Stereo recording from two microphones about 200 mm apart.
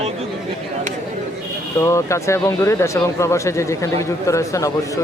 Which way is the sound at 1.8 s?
15° left (ahead or behind).